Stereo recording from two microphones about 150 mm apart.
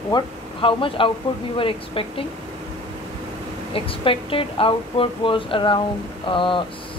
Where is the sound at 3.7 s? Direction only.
35° left (ahead or behind).